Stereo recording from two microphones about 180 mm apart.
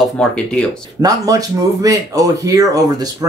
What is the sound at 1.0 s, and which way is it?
Speech, 20° right (ahead or behind).